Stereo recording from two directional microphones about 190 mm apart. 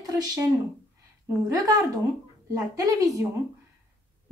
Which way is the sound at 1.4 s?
20° right (ahead or behind).